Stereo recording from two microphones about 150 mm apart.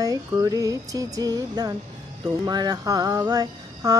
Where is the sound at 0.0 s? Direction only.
25° right (ahead or behind).